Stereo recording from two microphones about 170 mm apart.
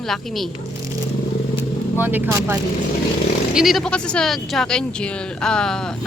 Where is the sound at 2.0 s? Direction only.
10° right (ahead or behind).